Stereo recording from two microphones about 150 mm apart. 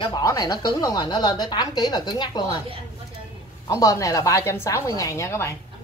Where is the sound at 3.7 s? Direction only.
20° left (ahead or behind).